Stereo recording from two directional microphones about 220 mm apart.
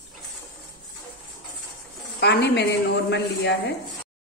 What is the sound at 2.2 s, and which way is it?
Speech, 50° left (ahead or behind).